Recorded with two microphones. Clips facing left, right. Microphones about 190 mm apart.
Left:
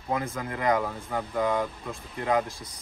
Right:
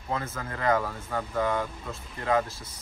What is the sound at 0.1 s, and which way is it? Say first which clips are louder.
Speech: left 3 dB; 15° left (ahead or behind).